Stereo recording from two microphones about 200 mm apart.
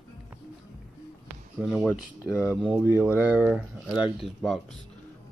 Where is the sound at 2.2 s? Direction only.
15° left (ahead or behind).